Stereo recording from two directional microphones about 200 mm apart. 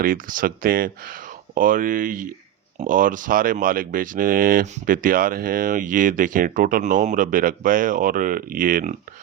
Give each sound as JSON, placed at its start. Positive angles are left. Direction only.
{"t": 0.0, "sound": "speech", "side_deg": -45}